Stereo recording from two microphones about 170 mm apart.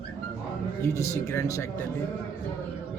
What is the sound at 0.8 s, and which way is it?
Speech, 15° left (ahead or behind).